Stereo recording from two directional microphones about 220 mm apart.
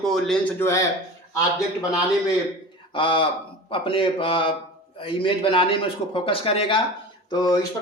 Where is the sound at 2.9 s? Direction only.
25° left (ahead or behind).